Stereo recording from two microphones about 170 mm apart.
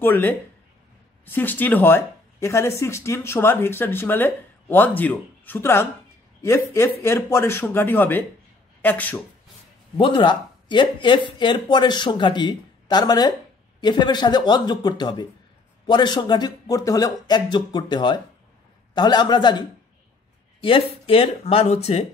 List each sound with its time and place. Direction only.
0.0 s speech: 10° left (ahead or behind)
9.9 s speech: 30° left (ahead or behind)
20.6 s speech: 35° left (ahead or behind)